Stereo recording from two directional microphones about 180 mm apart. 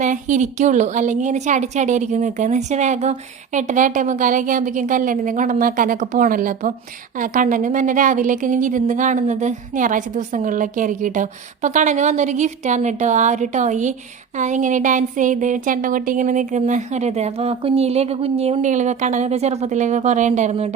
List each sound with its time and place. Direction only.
0.0 s a woman's voice: 45° right (ahead or behind)